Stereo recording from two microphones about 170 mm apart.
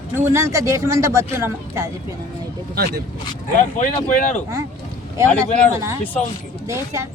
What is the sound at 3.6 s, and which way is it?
Speech, 50° left (ahead or behind).